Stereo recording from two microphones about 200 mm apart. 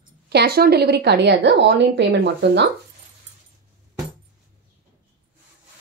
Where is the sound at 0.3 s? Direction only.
55° right (ahead or behind).